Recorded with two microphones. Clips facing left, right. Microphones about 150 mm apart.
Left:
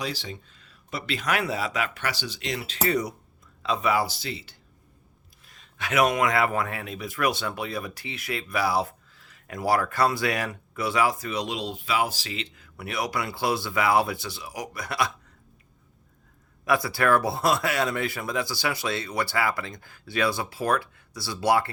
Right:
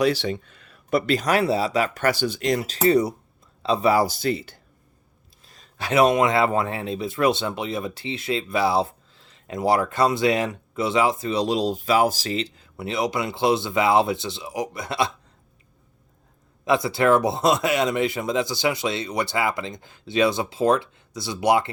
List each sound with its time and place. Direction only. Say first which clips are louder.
0.0 s speech: right 12 dB; 65° right (ahead or behind); by 2.7 s 45° right (ahead or behind)
2.8 s speech: right 7 dB; 30° right (ahead or behind)
4.0 s speech: right 9 dB; 50° right (ahead or behind)
5.5 s speech: right 5 dB; 35° right (ahead or behind)
16.6 s speech: right 4 dB; 20° right (ahead or behind)